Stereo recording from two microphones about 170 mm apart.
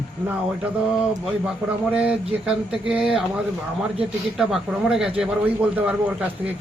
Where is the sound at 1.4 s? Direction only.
5° right (ahead or behind).